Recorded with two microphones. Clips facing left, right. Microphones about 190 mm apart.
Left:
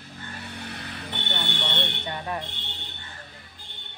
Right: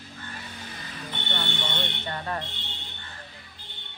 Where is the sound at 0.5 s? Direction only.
65° left (ahead or behind).